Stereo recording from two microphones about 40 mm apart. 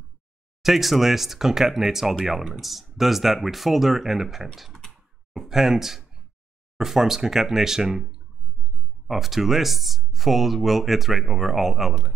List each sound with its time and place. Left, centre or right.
0.6 s speech: centre
4.6 s typing: centre
4.8 s a sound: centre
5.5 s speech: centre
9.0 s speech: centre